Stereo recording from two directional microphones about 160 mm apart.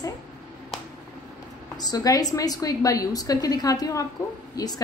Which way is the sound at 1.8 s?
25° left (ahead or behind).